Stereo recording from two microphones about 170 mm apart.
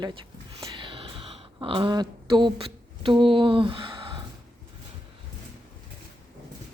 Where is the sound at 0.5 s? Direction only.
30° right (ahead or behind).